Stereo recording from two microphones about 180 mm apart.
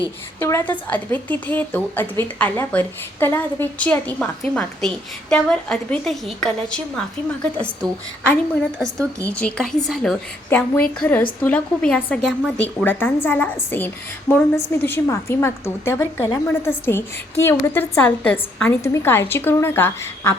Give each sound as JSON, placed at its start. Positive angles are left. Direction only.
{"t": 0.3, "sound": "a woman's voice", "side_deg": 15}
{"t": 9.0, "sound": "speech", "side_deg": -15}
{"t": 9.3, "sound": "a woman's voice", "side_deg": 5}